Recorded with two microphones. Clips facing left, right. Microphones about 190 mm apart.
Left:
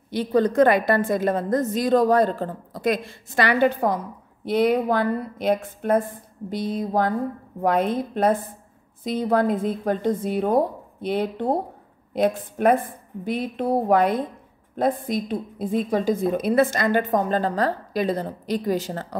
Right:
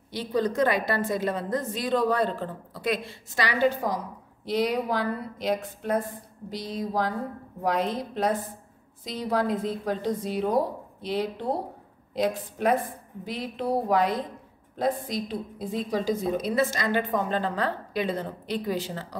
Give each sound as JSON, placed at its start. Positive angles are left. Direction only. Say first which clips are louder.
{"t": 0.1, "sound": "a woman's voice", "louder": "left 6 dB", "side_deg": 55}